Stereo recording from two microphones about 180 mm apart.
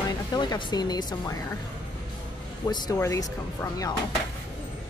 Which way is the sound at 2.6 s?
20° left (ahead or behind).